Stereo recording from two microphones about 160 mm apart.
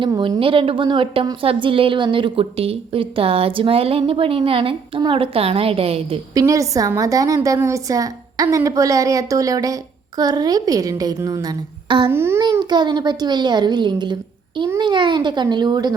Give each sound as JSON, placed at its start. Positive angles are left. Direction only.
{"t": 0.0, "sound": "a woman's voice", "side_deg": -30}
{"t": 6.3, "sound": "a woman's voice", "side_deg": -20}
{"t": 12.1, "sound": "a child's voice", "side_deg": -15}
{"t": 12.4, "sound": "a woman's voice", "side_deg": -25}